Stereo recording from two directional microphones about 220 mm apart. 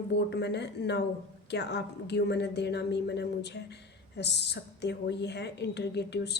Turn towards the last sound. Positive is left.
turn(degrees=50)  # may be behind; listen again after turning